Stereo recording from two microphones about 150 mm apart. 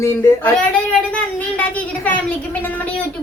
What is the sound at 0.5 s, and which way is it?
A woman's voice, 5° left (ahead or behind).